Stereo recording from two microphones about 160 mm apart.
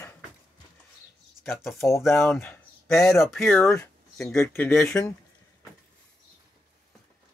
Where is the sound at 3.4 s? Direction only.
10° left (ahead or behind).